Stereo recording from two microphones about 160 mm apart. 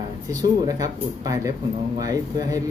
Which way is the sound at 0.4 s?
25° right (ahead or behind).